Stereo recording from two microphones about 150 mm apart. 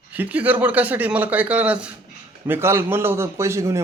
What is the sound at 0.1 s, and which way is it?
A man's voice, 10° right (ahead or behind).